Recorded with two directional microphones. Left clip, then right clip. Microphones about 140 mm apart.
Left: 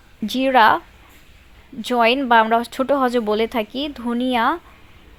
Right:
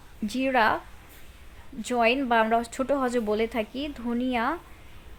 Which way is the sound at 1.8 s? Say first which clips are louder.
Left 7 dB; 30° left (ahead or behind).